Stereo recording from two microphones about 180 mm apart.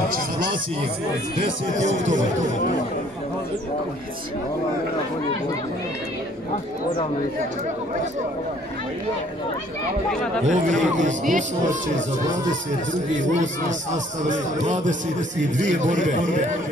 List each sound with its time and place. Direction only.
1.9 s speech: 90° right
10.4 s a man's voice: 45° right (ahead or behind)
13.3 s a man's voice: 45° right (ahead or behind)